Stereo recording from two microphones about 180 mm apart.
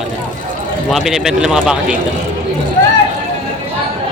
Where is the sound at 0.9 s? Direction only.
Centre (ahead or behind).